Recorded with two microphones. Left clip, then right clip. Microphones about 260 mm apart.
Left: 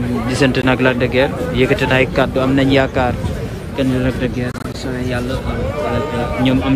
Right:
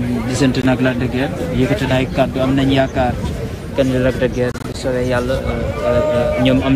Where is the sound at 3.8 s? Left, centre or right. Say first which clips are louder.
Right 3 dB; centre.